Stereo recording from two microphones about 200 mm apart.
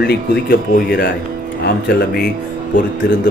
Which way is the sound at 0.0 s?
55° left (ahead or behind).